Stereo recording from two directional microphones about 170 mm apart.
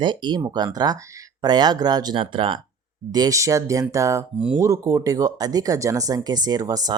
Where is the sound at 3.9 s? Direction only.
20° right (ahead or behind).